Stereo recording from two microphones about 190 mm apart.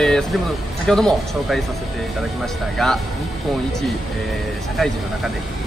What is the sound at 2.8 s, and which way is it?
Speech, centre (ahead or behind).